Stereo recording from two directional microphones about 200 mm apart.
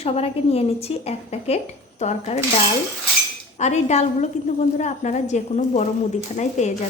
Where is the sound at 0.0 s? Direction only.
30° left (ahead or behind).